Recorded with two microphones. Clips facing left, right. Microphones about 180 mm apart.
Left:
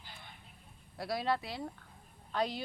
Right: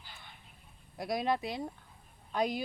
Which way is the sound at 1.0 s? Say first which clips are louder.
Right 2 dB; 15° right (ahead or behind).